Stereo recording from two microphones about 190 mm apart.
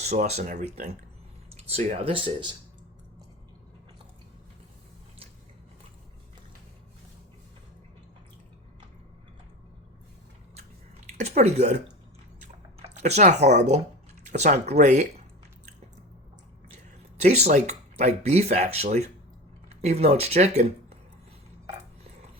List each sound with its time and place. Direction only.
0.0 s speech: 35° right (ahead or behind)
1.7 s speech: 35° right (ahead or behind)
11.2 s speech: 35° right (ahead or behind)
12.9 s speech: 35° right (ahead or behind)
17.2 s speech: 35° right (ahead or behind)